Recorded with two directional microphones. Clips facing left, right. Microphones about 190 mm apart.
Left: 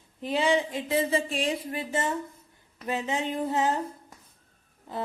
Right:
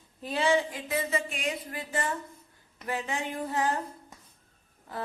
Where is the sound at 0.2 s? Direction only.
15° left (ahead or behind).